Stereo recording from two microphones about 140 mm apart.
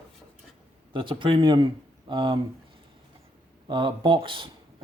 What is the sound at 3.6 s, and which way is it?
Speech, 35° right (ahead or behind).